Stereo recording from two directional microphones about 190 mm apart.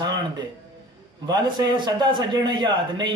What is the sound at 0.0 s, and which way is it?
Speech, 25° right (ahead or behind).